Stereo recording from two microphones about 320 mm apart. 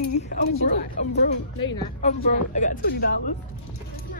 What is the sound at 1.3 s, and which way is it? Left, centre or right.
Speech, left.